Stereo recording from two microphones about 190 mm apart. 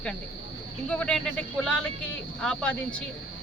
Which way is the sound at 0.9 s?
5° left (ahead or behind).